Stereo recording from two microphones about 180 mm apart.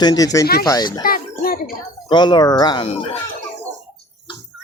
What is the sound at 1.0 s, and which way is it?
Bird, 50° left (ahead or behind).